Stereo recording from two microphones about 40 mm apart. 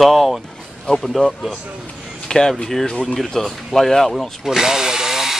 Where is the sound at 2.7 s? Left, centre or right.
Centre.